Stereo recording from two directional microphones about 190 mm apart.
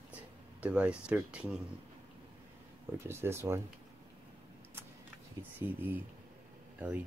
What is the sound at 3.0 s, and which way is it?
Speech, 15° right (ahead or behind).